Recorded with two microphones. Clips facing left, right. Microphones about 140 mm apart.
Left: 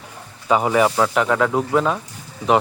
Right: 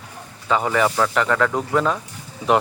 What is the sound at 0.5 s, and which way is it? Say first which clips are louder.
Speech: left 3 dB; 10° left (ahead or behind).